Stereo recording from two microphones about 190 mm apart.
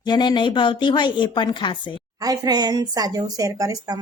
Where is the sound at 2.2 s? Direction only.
20° right (ahead or behind).